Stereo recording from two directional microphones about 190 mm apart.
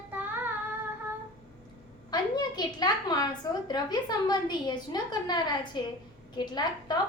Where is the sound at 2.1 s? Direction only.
20° left (ahead or behind).